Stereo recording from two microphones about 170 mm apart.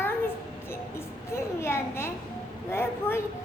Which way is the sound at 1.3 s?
15° left (ahead or behind).